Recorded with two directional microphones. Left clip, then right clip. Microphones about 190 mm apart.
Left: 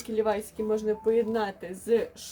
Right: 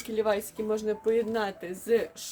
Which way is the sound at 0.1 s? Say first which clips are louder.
Even; 15° right (ahead or behind).